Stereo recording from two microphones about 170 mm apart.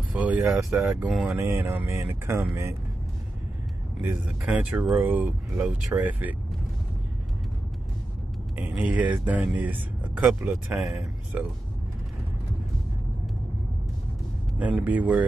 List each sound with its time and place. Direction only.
0.1 s speech: 10° right (ahead or behind)
1.4 s speech: 15° right (ahead or behind)
4.0 s speech: 5° right (ahead or behind)
8.5 s speech: 10° right (ahead or behind)
14.6 s speech: 10° right (ahead or behind)